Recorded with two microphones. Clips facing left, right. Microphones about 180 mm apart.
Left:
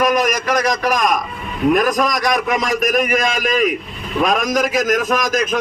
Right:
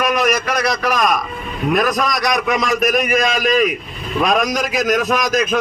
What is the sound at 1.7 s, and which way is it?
A man's voice, 45° left (ahead or behind).